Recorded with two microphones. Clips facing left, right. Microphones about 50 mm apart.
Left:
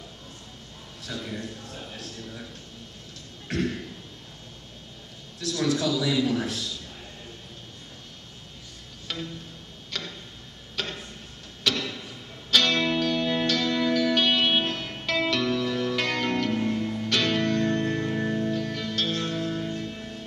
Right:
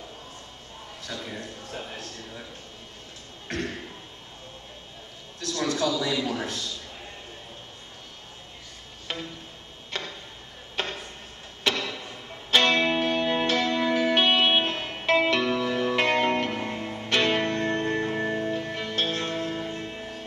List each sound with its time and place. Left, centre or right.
3.4 s a sound: centre
5.7 s a man's voice: centre
9.1 s music: right
9.8 s tick-tock: right
10.8 s a sound: right
11.6 s music: centre